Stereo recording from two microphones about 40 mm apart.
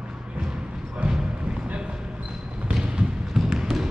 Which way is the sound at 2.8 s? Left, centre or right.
Centre.